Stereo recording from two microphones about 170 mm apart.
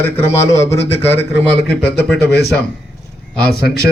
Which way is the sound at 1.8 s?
75° left (ahead or behind).